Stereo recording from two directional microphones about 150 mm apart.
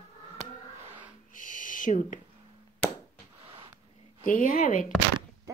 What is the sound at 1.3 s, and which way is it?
Speech, 60° left (ahead or behind).